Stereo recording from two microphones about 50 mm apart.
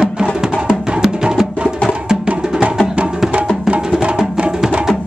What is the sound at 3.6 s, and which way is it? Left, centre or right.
Music, centre.